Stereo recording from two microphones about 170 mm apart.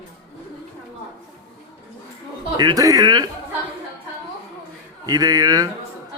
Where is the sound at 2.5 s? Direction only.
20° right (ahead or behind).